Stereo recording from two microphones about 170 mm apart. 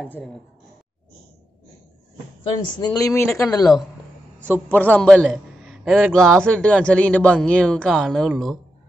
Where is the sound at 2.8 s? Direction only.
20° left (ahead or behind).